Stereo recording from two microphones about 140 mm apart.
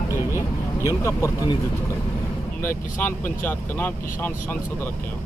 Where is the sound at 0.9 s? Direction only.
20° left (ahead or behind).